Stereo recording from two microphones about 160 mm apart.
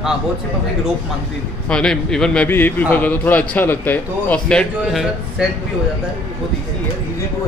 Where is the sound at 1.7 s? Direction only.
5° left (ahead or behind).